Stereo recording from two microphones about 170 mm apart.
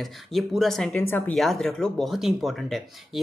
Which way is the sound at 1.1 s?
15° left (ahead or behind).